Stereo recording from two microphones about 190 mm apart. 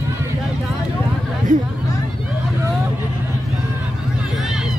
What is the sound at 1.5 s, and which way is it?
Hubbub, 40° right (ahead or behind).